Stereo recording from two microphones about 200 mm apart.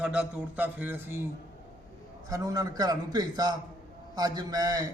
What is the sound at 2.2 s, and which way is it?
A man's voice, 15° right (ahead or behind).